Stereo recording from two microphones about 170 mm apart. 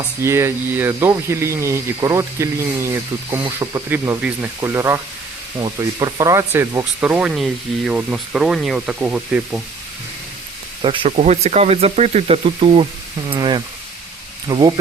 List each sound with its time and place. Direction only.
0.2 s speech: 15° right (ahead or behind)
10.8 s speech: 30° right (ahead or behind)